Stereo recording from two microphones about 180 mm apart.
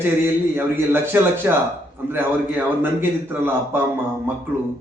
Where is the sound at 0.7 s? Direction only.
10° right (ahead or behind).